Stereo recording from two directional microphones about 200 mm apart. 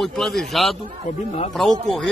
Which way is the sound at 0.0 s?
Centre (ahead or behind).